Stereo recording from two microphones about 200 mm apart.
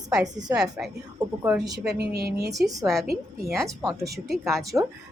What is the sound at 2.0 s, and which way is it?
Speech, 50° right (ahead or behind).